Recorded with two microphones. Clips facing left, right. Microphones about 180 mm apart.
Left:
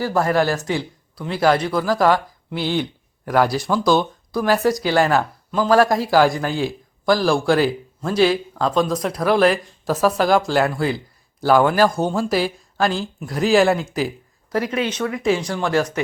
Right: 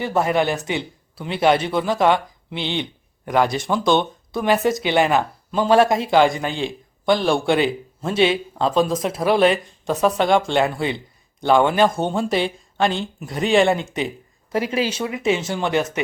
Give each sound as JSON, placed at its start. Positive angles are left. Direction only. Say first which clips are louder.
{"t": 0.0, "sound": "speech", "louder": "left 1 dB", "side_deg": -20}
{"t": 3.2, "sound": "speech", "louder": "left 1 dB", "side_deg": 5}
{"t": 4.3, "sound": "speech", "louder": "left 1 dB", "side_deg": -20}
{"t": 5.9, "sound": "speech", "louder": "even", "side_deg": 0}
{"t": 8.2, "sound": "speech", "louder": "left 1 dB", "side_deg": -25}
{"t": 8.6, "sound": "speech", "louder": "right 1 dB", "side_deg": 0}
{"t": 14.5, "sound": "speech", "louder": "even", "side_deg": -30}